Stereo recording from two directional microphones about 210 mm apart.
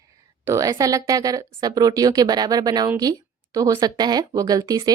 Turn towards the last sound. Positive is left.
turn(degrees=-15)  # may be behind; listen again after turning